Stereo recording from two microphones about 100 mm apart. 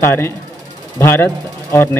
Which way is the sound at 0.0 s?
25° left (ahead or behind).